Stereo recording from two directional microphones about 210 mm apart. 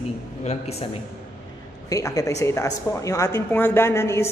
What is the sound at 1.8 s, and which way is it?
Speech, 15° left (ahead or behind).